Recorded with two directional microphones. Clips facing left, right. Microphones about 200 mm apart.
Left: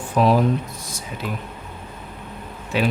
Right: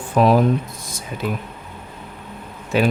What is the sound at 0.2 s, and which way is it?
Speech, 60° right (ahead or behind).